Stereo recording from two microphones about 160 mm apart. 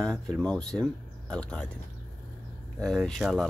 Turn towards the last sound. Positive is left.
turn(degrees=0)  # may be behind; listen again after turning